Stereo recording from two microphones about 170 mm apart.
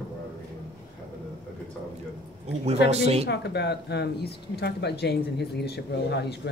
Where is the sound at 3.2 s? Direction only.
80° left.